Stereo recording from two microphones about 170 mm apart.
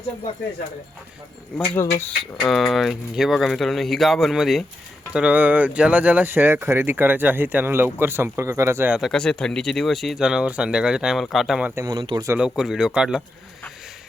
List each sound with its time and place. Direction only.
1.5 s speech: 10° left (ahead or behind)
2.5 s speech: centre (ahead or behind); by 8.9 s 15° right (ahead or behind)
8.9 s speech: centre (ahead or behind)
11.7 s speech: 20° right (ahead or behind)
12.5 s speech: 5° right (ahead or behind)